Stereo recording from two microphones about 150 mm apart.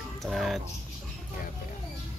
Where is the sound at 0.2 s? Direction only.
Centre (ahead or behind).